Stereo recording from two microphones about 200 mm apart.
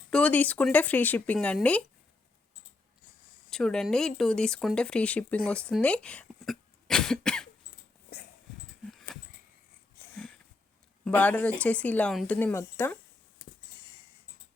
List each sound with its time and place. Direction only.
0.1 s speech: 5° left (ahead or behind)
3.5 s speech: 5° left (ahead or behind)
8.1 s dog: 50° left (ahead or behind)
8.9 s a sound: centre (ahead or behind)
11.0 s speech: 5° left (ahead or behind)